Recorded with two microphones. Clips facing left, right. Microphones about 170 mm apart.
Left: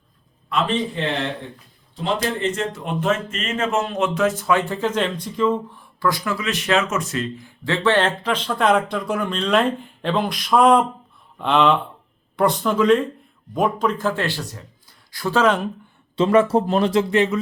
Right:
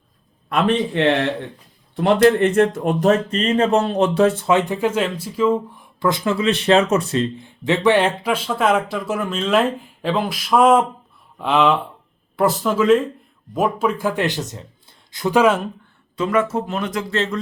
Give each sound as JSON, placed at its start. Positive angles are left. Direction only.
{"t": 0.4, "sound": "a man's voice", "side_deg": -65}
{"t": 6.0, "sound": "speech", "side_deg": -25}
{"t": 16.1, "sound": "speech", "side_deg": 30}
{"t": 17.1, "sound": "speech", "side_deg": 15}